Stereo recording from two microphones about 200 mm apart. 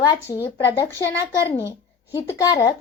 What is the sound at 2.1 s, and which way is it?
Speech, 15° left (ahead or behind).